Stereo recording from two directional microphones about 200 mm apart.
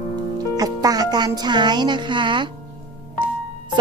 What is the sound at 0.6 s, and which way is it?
Speech, 20° right (ahead or behind).